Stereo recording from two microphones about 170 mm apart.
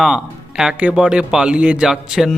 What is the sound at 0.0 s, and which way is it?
Speech, 5° right (ahead or behind).